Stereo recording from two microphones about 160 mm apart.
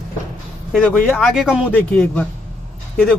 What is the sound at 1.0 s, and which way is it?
Speech, 5° left (ahead or behind).